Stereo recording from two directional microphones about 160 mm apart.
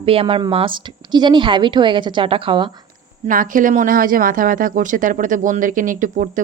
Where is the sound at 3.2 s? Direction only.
60° right (ahead or behind).